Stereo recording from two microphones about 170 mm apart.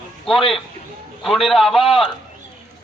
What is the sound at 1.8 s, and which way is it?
Speech, 30° left (ahead or behind).